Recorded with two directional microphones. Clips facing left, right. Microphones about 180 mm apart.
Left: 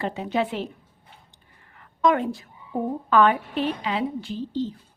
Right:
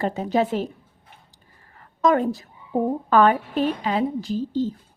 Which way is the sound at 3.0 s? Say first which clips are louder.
Right 1 dB; 40° right (ahead or behind).